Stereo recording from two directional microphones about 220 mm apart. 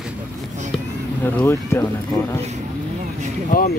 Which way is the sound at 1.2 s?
10° left (ahead or behind).